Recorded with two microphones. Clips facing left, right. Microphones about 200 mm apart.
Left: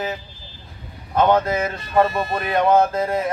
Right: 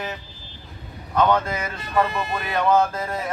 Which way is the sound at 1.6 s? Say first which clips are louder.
Left 4 dB; 40° left (ahead or behind).